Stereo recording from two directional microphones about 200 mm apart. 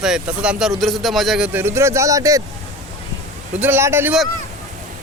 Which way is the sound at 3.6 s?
10° right (ahead or behind).